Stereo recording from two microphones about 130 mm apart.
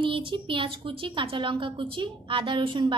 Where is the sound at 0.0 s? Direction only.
40° right (ahead or behind).